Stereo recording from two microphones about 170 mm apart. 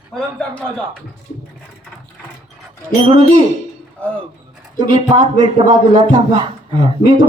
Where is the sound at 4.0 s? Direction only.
10° left (ahead or behind).